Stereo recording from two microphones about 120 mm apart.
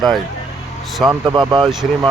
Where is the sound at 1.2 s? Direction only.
40° right (ahead or behind).